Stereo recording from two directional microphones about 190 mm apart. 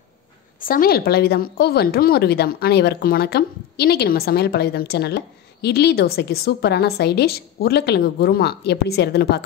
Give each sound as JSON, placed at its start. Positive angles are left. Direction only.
{"t": 0.6, "sound": "a woman's voice", "side_deg": 50}